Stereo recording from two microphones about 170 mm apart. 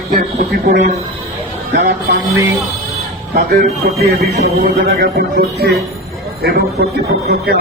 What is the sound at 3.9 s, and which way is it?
Speech, 65° right (ahead or behind).